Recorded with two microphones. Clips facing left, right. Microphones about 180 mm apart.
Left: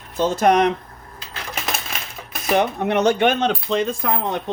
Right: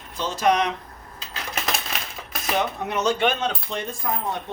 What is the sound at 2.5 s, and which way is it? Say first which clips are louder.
Speech: left 7 dB; 60° left (ahead or behind).